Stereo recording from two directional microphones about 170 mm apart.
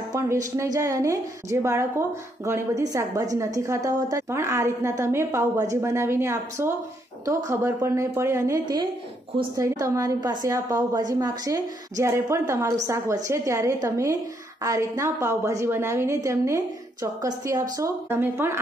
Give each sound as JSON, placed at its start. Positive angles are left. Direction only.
{"t": 0.1, "sound": "a woman's voice", "side_deg": -20}